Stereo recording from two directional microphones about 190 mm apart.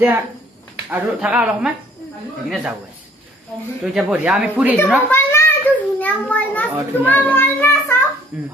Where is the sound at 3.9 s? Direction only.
5° right (ahead or behind).